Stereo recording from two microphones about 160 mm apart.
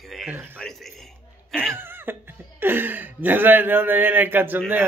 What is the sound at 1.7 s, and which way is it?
Speech, 15° right (ahead or behind).